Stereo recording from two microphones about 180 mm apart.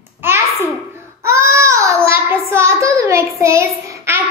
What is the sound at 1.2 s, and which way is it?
Child singing, 15° right (ahead or behind).